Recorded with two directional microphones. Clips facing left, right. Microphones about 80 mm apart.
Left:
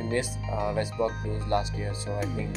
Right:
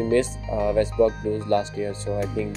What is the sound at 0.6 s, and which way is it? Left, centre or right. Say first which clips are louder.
Speech: right 8 dB; centre.